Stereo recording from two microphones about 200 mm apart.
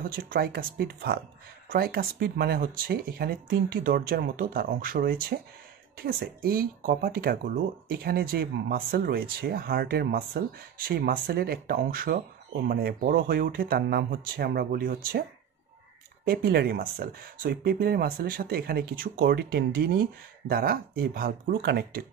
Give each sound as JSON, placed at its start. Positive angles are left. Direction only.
{"t": 0.0, "sound": "speech", "side_deg": -45}
{"t": 16.3, "sound": "speech", "side_deg": -50}